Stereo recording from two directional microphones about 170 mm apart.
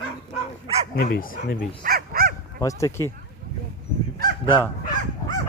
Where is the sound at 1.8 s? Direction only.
60° right (ahead or behind).